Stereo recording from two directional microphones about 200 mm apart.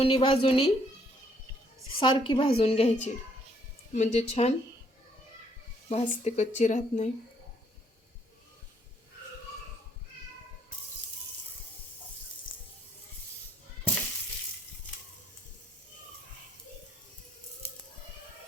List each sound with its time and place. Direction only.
0.0 s a woman's voice: 25° left (ahead or behind)
2.0 s a woman's voice: 25° left (ahead or behind)
5.9 s speech: 35° left (ahead or behind)